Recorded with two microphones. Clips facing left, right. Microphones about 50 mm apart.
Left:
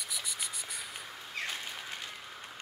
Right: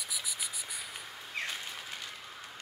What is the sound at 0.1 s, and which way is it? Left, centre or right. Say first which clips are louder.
Cricket: left 1 dB; centre.